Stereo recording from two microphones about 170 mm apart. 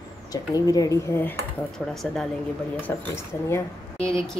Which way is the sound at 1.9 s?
Centre (ahead or behind).